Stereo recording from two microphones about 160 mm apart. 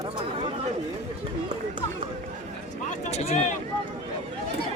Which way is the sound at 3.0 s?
45° left (ahead or behind).